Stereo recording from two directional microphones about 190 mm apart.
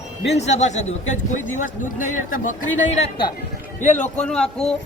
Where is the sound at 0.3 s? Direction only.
35° left (ahead or behind).